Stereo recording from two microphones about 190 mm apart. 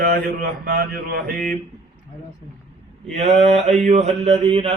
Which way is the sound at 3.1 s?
35° right (ahead or behind).